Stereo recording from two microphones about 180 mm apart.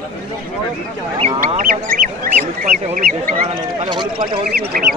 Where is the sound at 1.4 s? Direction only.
50° right (ahead or behind).